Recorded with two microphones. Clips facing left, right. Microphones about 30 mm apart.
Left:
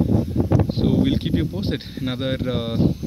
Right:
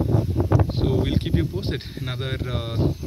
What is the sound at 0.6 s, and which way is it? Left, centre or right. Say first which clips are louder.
Speech: left 4 dB; centre.